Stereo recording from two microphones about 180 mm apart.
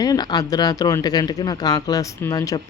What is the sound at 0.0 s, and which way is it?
A man's voice, 20° left (ahead or behind).